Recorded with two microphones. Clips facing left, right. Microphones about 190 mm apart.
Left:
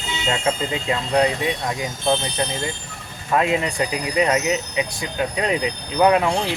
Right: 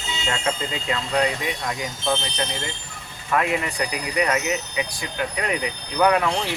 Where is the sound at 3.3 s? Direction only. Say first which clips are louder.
Left 3 dB; 25° left (ahead or behind).